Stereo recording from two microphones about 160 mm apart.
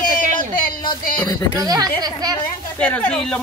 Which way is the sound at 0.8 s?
30° left (ahead or behind).